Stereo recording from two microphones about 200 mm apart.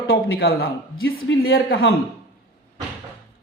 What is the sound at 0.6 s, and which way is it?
Speech, 80° left.